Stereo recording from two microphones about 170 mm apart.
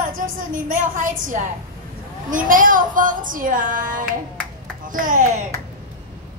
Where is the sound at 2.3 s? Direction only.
55° right (ahead or behind).